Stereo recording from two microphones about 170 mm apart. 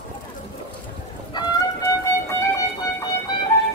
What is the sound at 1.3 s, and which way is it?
Music, 25° left (ahead or behind).